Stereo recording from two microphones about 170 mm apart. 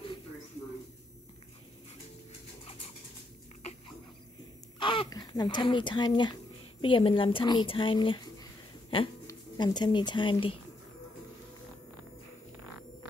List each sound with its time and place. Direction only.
4.7 s speech: 30° left (ahead or behind)